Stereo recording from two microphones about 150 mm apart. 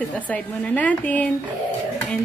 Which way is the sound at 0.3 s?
10° left (ahead or behind).